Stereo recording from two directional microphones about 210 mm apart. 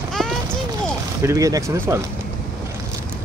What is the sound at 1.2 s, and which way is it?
Speech, 15° right (ahead or behind).